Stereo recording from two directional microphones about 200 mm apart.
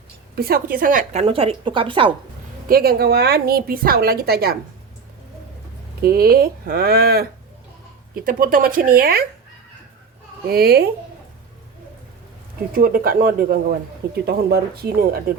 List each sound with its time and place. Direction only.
0.3 s a woman's voice: 50° right (ahead or behind)
1.2 s a woman's voice: 30° right (ahead or behind)
2.6 s a woman's voice: 50° right (ahead or behind)
6.0 s a woman's voice: 50° right (ahead or behind)
10.5 s a woman's voice: 50° right (ahead or behind)
12.7 s a woman's voice: 45° right (ahead or behind)